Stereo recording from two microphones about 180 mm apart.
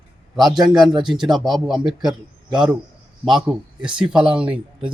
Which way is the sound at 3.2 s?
5° right (ahead or behind).